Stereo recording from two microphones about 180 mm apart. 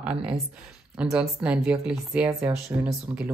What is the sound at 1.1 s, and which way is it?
Speech, 5° right (ahead or behind).